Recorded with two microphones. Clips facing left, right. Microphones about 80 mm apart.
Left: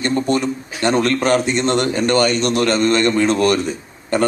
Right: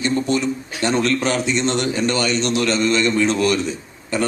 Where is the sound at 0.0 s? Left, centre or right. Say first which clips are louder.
Left 2 dB; left.